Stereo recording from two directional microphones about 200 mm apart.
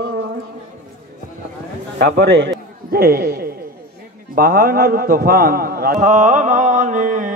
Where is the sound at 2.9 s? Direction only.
50° right (ahead or behind).